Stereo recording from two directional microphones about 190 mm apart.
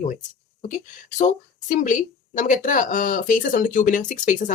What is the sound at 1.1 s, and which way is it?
Speech, 40° left (ahead or behind).